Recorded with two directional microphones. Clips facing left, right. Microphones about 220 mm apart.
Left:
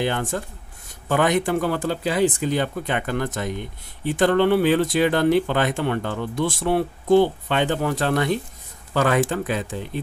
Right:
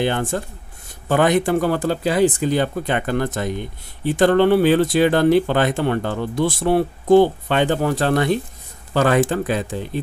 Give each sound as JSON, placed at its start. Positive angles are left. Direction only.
{"t": 0.0, "sound": "speech", "side_deg": -30}